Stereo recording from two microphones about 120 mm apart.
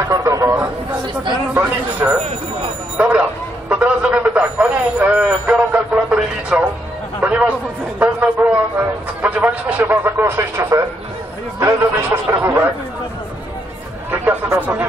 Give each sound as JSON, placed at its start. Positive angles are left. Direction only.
{"t": 0.1, "sound": "speech", "side_deg": -25}
{"t": 1.5, "sound": "a man's voice", "side_deg": -15}
{"t": 8.0, "sound": "a sound", "side_deg": -15}
{"t": 9.2, "sound": "speech", "side_deg": -10}
{"t": 14.1, "sound": "speech", "side_deg": -15}